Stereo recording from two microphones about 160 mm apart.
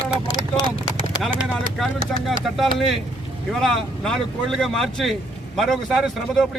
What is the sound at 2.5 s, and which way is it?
Speech, centre (ahead or behind).